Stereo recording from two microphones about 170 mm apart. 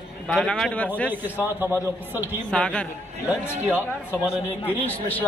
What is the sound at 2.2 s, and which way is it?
Speech, 5° left (ahead or behind).